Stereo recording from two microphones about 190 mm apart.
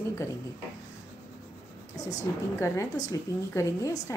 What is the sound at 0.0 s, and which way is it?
Speech, 15° left (ahead or behind).